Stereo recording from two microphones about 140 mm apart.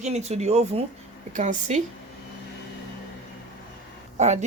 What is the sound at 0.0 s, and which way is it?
Speech, 50° right (ahead or behind).